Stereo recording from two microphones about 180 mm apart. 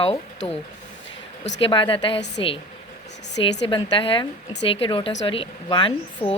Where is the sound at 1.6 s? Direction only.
30° left (ahead or behind).